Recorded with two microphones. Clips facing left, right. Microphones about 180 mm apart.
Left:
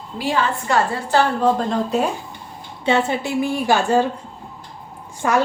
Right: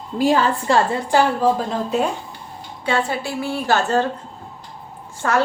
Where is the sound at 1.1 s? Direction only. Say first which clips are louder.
Even; 5° right (ahead or behind).